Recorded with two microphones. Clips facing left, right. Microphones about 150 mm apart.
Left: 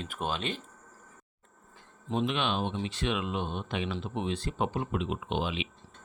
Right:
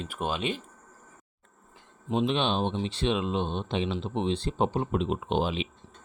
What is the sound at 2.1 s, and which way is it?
Speech, 25° right (ahead or behind).